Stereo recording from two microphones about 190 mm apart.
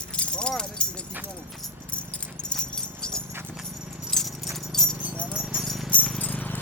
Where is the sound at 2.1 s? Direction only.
5° left (ahead or behind).